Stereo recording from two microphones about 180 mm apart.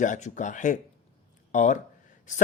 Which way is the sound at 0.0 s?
40° left (ahead or behind).